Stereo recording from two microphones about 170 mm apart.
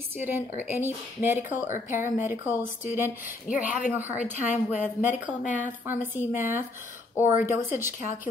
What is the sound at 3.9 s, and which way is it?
Speech, 10° right (ahead or behind).